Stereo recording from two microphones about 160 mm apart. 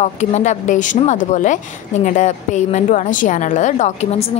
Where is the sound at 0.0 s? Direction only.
45° left (ahead or behind).